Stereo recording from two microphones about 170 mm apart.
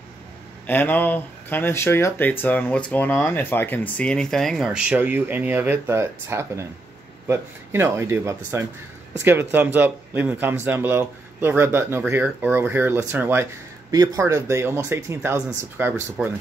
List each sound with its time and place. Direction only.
0.7 s speech: 10° left (ahead or behind); by 15.9 s 15° right (ahead or behind)
16.2 s speech: centre (ahead or behind)